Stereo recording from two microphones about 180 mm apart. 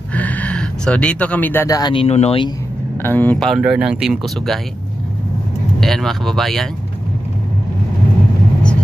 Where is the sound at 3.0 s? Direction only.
10° left (ahead or behind).